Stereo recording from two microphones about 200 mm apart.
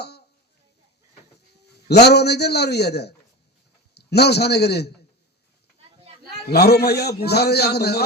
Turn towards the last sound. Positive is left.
turn(degrees=55)  # may be behind; listen again after turning